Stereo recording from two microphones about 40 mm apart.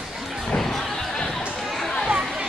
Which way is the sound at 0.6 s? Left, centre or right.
Centre.